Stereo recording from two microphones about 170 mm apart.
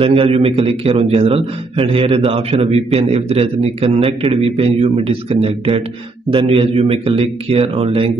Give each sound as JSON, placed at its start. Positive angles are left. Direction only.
{"t": 0.0, "sound": "a man's voice", "side_deg": -35}